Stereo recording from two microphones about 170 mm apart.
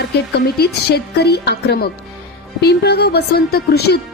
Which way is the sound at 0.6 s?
70° left (ahead or behind).